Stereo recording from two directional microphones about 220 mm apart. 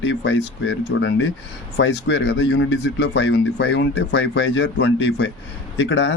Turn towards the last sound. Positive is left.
turn(degrees=55)  # may be behind; listen again after turning